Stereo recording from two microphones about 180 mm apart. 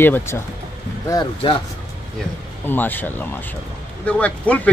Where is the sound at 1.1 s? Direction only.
25° left (ahead or behind).